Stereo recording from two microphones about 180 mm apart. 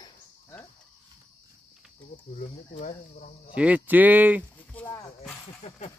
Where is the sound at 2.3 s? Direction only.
40° left (ahead or behind).